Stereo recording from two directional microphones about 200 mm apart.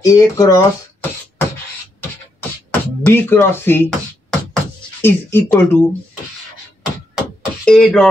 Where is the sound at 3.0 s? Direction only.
10° left (ahead or behind).